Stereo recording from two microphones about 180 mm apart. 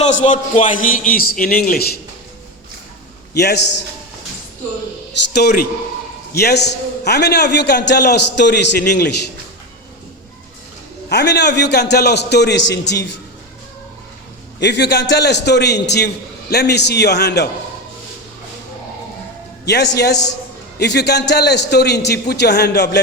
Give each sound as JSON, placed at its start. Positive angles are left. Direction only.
{"t": 0.0, "sound": "a man's voice", "side_deg": 40}
{"t": 3.3, "sound": "a man's voice", "side_deg": 65}
{"t": 5.3, "sound": "a man's voice", "side_deg": 65}
{"t": 11.1, "sound": "a man's voice", "side_deg": 70}
{"t": 14.6, "sound": "a man's voice", "side_deg": 75}
{"t": 19.6, "sound": "a man's voice", "side_deg": 70}